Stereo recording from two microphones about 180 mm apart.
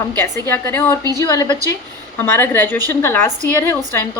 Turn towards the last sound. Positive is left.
turn(degrees=15)  # may be behind; listen again after turning